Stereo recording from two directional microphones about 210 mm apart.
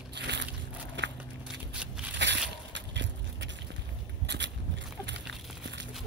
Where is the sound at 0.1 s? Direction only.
55° right (ahead or behind).